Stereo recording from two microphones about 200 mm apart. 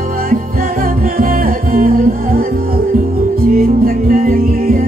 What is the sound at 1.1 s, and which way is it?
Music, 45° right (ahead or behind).